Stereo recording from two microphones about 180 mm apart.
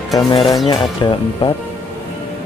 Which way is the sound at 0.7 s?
25° left (ahead or behind).